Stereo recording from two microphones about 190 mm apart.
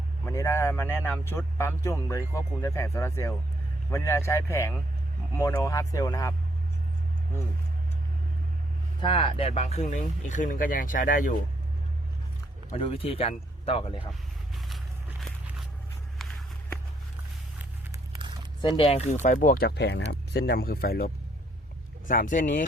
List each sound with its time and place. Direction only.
0.3 s speech: 15° left (ahead or behind)
9.0 s speech: 25° left (ahead or behind); by 11.3 s 45° left (ahead or behind)
12.7 s speech: 30° left (ahead or behind)
18.1 s a sound: 25° right (ahead or behind)
18.6 s speech: 25° left (ahead or behind); by 22.6 s 45° left (ahead or behind)